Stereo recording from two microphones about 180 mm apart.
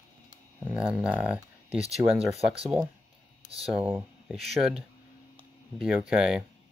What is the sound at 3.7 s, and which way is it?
Speech, 5° right (ahead or behind).